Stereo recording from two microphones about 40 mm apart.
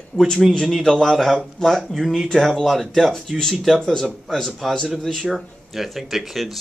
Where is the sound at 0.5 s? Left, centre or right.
Centre.